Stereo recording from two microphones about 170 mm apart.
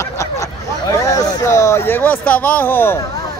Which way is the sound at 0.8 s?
20° left (ahead or behind).